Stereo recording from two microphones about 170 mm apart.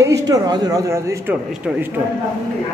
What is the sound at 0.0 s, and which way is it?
Speech, 20° right (ahead or behind).